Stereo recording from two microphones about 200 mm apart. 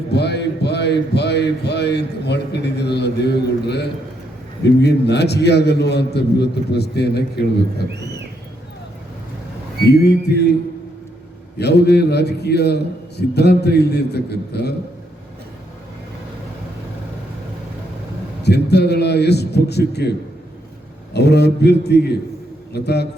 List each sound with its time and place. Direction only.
0.1 s a man's voice: 55° left (ahead or behind)
9.8 s a man's voice: 55° left (ahead or behind)
11.5 s a man's voice: 55° left (ahead or behind)
18.4 s a man's voice: 55° left (ahead or behind)